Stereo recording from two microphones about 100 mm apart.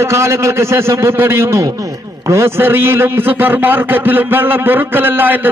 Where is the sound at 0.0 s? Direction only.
30° right (ahead or behind).